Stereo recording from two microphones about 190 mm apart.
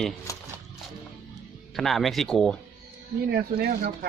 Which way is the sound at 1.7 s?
Centre (ahead or behind).